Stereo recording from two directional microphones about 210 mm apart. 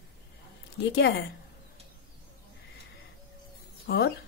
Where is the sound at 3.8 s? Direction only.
50° left (ahead or behind).